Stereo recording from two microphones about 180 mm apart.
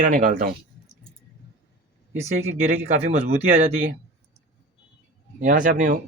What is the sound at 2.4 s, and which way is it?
Speech, 40° right (ahead or behind).